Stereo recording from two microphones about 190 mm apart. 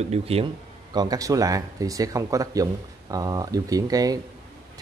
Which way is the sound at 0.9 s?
20° right (ahead or behind).